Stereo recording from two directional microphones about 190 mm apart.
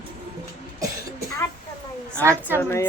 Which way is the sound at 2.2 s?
10° right (ahead or behind).